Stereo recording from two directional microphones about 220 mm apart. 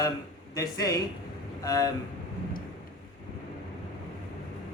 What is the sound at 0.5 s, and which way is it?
Speech, 15° left (ahead or behind).